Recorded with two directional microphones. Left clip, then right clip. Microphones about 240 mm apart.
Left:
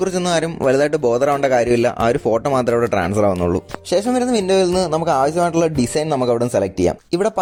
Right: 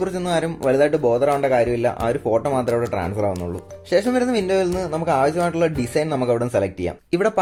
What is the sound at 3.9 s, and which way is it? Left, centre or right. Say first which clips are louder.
Speech: left 1 dB; left.